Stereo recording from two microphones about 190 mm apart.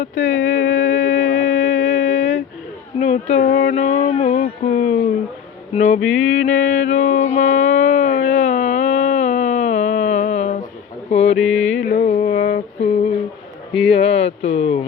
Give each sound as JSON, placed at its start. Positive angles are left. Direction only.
{"t": 0.2, "sound": "a sound", "side_deg": 45}
{"t": 5.7, "sound": "music", "side_deg": 40}
{"t": 6.1, "sound": "mantra", "side_deg": 40}
{"t": 11.1, "sound": "a sound", "side_deg": 35}
{"t": 11.3, "sound": "mantra", "side_deg": 5}
{"t": 11.6, "sound": "music", "side_deg": 40}
{"t": 13.7, "sound": "speech", "side_deg": 30}